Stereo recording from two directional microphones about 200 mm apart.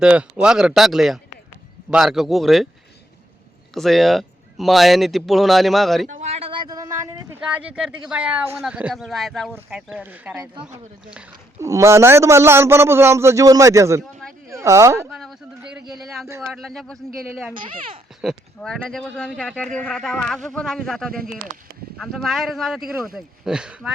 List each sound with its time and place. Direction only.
0.0 s speech: 5° right (ahead or behind)
3.8 s speech: centre (ahead or behind)
6.1 s a sound: 30° right (ahead or behind)
7.4 s speech: 5° right (ahead or behind)
11.6 s a man's voice: 15° right (ahead or behind)
15.1 s a sound: centre (ahead or behind)
16.5 s speech: centre (ahead or behind)
18.2 s speech: centre (ahead or behind)